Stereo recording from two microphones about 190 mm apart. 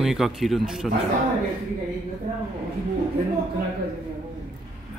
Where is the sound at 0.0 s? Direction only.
Centre (ahead or behind).